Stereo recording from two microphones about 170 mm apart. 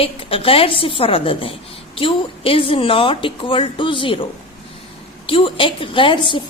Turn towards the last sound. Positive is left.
turn(degrees=30)  # may be behind; listen again after turning